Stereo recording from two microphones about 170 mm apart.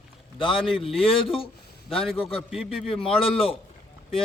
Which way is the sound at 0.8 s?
35° left (ahead or behind).